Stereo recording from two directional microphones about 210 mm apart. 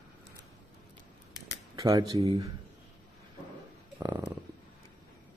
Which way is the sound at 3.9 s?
10° right (ahead or behind).